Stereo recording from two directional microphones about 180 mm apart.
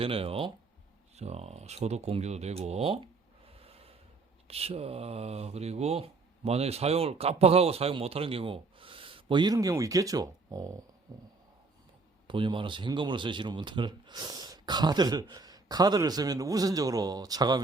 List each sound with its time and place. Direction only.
0.0 s speech: 30° right (ahead or behind)
11.1 s a sound: 15° right (ahead or behind)
12.3 s speech: 25° right (ahead or behind)